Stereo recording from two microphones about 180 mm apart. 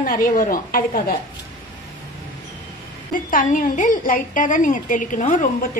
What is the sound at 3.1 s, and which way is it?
A woman's voice, 50° left (ahead or behind).